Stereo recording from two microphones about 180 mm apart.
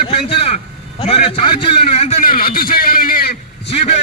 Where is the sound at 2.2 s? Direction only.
55° left (ahead or behind).